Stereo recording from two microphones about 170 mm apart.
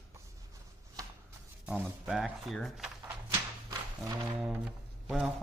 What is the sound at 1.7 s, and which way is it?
Speech, 5° right (ahead or behind).